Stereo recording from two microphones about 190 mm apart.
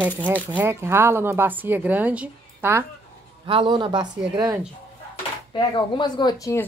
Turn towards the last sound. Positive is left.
turn(degrees=15)  # may be behind; listen again after turning